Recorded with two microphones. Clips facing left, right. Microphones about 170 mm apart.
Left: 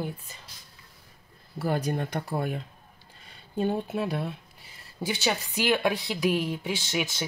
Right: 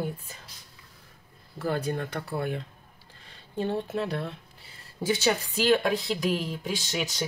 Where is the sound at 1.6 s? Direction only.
15° left (ahead or behind).